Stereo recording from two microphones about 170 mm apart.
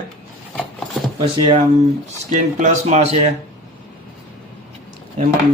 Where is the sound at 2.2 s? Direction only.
45° right (ahead or behind).